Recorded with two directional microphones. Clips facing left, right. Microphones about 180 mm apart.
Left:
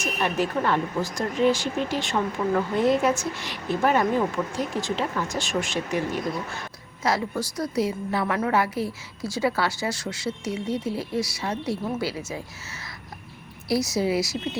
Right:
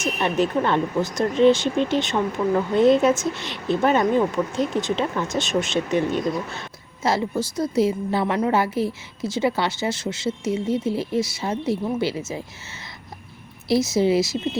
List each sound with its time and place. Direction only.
0.0 s speech: 25° right (ahead or behind)
13.7 s speech: 25° right (ahead or behind)